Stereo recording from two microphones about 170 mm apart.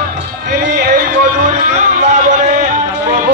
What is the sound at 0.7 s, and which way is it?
Music, 45° right (ahead or behind).